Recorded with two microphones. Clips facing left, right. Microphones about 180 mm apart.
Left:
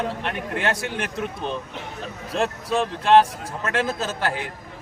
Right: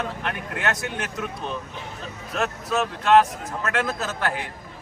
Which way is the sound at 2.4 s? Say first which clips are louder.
Left 2 dB; 30° left (ahead or behind).